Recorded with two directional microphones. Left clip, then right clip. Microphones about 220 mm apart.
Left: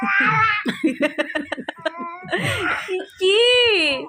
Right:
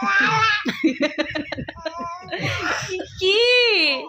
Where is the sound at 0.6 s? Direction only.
Centre (ahead or behind).